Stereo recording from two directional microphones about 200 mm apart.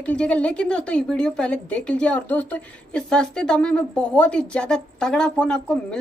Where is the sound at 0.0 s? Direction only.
5° left (ahead or behind).